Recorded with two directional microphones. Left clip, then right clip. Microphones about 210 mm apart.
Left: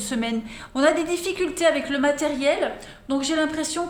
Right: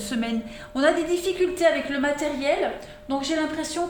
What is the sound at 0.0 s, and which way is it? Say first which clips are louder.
A woman's voice: left 1 dB; 25° left (ahead or behind).